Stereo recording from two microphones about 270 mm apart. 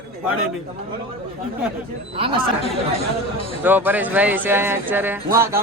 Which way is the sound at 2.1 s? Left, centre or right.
Centre.